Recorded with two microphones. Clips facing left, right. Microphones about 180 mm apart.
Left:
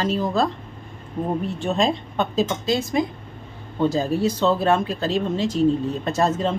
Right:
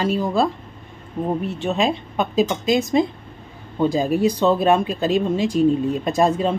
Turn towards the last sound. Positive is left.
turn(degrees=-15)  # may be behind; listen again after turning